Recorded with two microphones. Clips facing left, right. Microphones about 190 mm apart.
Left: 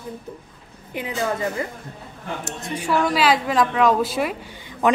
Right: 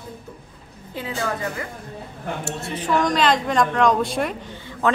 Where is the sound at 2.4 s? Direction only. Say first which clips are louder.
Even; 15° left (ahead or behind).